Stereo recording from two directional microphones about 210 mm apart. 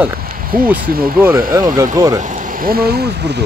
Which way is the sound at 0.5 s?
45° right (ahead or behind).